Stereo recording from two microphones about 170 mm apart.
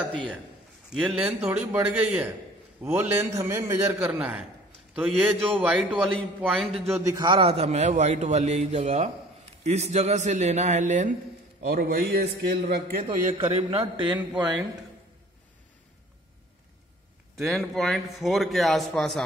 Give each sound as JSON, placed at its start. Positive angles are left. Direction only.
{"t": 0.8, "sound": "a man's voice", "side_deg": -5}
{"t": 6.0, "sound": "a man's voice", "side_deg": 5}
{"t": 7.1, "sound": "a man's voice", "side_deg": -25}
{"t": 11.7, "sound": "a man's voice", "side_deg": -60}
{"t": 13.3, "sound": "a man's voice", "side_deg": -35}
{"t": 17.4, "sound": "a man's voice", "side_deg": 0}